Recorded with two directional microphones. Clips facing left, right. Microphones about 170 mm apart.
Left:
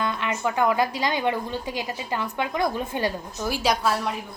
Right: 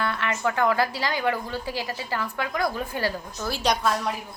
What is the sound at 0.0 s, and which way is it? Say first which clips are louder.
Speech: even; 15° left (ahead or behind).